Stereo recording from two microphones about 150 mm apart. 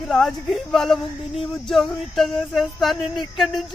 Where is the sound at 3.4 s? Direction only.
Centre (ahead or behind).